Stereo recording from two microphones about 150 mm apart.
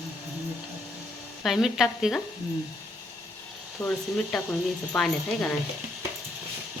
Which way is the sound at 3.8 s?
5° left (ahead or behind).